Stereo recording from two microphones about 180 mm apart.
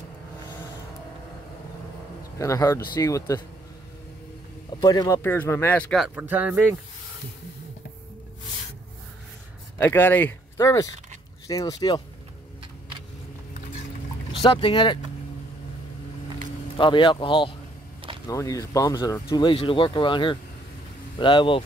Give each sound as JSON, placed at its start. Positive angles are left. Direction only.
{"t": 2.3, "sound": "speech", "side_deg": 15}
{"t": 4.6, "sound": "speech", "side_deg": 20}
{"t": 9.8, "sound": "speech", "side_deg": 10}
{"t": 14.4, "sound": "speech", "side_deg": 30}
{"t": 16.7, "sound": "speech", "side_deg": 25}